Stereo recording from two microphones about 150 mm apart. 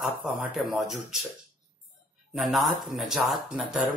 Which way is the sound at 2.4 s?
Centre (ahead or behind).